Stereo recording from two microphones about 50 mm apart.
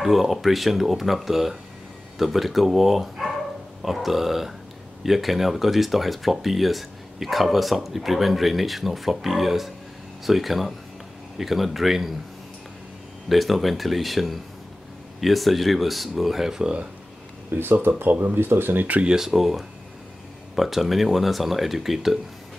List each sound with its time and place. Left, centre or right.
0.0 s speech: centre
13.3 s speech: centre
17.5 s speech: right
19.0 s speech: centre